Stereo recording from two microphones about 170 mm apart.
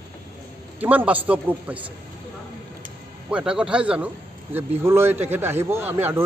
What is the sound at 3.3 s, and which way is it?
Speech, 5° right (ahead or behind).